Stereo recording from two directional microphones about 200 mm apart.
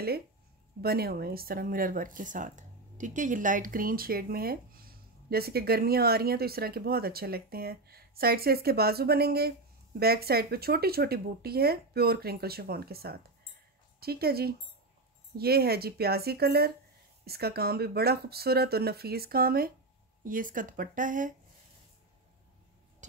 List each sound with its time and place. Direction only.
0.7 s speech: 50° right (ahead or behind)